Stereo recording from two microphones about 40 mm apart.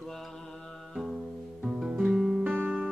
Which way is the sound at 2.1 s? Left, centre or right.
Centre.